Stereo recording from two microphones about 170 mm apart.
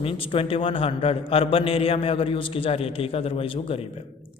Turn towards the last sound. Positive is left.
turn(degrees=35)  # may be behind; listen again after turning